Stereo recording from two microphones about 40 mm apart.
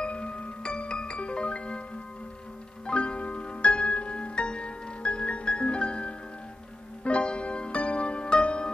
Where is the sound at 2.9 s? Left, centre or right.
Left.